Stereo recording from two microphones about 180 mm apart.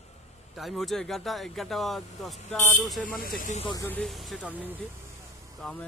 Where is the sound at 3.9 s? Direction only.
Centre (ahead or behind).